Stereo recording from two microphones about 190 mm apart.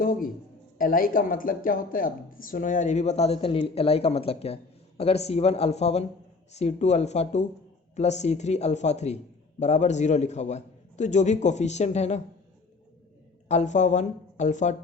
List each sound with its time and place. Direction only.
0.0 s a man's voice: 50° left (ahead or behind)
13.5 s speech: 40° left (ahead or behind)